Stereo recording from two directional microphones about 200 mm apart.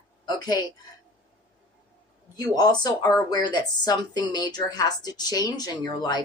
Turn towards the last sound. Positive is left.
turn(degrees=20)  # may be behind; listen again after turning